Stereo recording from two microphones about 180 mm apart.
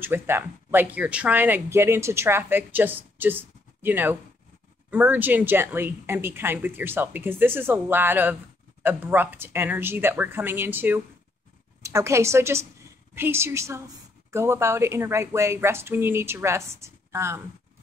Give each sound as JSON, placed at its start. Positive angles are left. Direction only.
{"t": 0.0, "sound": "speech", "side_deg": -10}